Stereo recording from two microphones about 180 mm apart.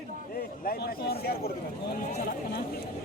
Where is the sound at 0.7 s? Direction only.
60° left (ahead or behind).